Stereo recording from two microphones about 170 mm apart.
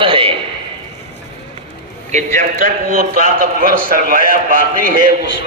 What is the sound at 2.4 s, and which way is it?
A man's voice, 55° right (ahead or behind).